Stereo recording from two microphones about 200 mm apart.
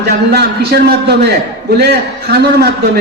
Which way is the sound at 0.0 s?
55° right (ahead or behind).